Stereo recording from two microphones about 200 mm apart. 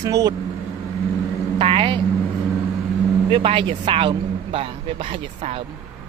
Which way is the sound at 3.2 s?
25° right (ahead or behind).